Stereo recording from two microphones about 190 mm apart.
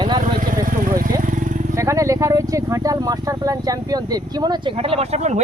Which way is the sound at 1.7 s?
15° right (ahead or behind).